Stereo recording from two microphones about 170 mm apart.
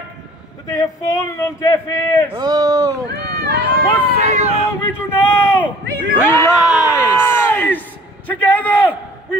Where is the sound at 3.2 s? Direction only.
70° right (ahead or behind).